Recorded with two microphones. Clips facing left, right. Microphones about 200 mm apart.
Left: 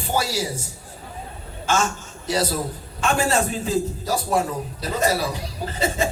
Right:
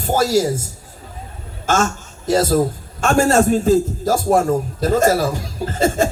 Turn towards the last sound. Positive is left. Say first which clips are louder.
# right 6 dB
turn(degrees=-45)  # may be behind; listen again after turning